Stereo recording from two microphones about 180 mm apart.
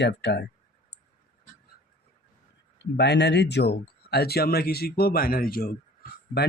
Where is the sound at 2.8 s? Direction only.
70° left (ahead or behind).